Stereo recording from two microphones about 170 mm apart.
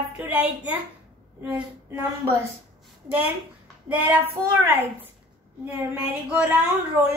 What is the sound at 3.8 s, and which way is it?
A woman's voice, 10° right (ahead or behind).